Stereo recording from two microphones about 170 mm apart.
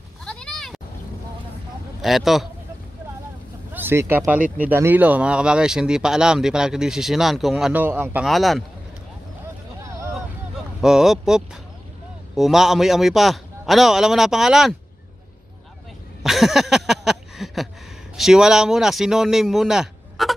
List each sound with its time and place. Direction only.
0.2 s a sound: 5° left (ahead or behind)
2.0 s speech: centre (ahead or behind)
3.7 s a sound: 15° right (ahead or behind)
4.2 s speech: 10° right (ahead or behind)
8.3 s speech: centre (ahead or behind)
9.8 s vehicle: 15° right (ahead or behind)
10.8 s speech: 5° right (ahead or behind)
16.2 s a sound: centre (ahead or behind)
18.1 s speech: centre (ahead or behind)